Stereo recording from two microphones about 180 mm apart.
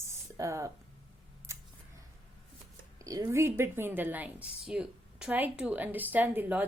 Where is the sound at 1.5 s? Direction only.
15° right (ahead or behind).